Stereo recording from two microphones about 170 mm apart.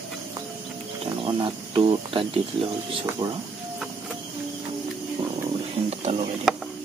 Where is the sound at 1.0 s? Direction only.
30° right (ahead or behind).